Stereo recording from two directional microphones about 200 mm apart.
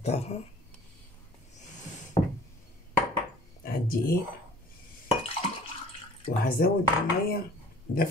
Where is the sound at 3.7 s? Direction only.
45° left (ahead or behind).